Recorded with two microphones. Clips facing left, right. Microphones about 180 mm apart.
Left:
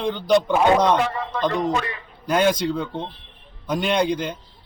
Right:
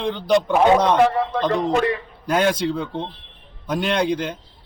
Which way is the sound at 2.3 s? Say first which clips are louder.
Even; centre (ahead or behind).